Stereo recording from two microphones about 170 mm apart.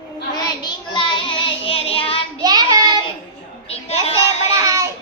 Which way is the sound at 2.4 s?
25° right (ahead or behind).